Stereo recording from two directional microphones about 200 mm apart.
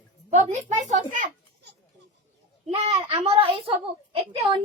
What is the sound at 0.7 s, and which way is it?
Speech, 35° right (ahead or behind).